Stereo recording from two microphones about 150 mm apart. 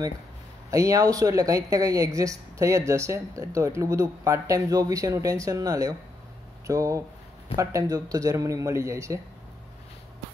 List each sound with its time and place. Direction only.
0.7 s speech: 20° right (ahead or behind)